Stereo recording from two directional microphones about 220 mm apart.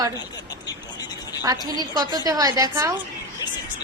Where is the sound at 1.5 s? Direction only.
15° right (ahead or behind).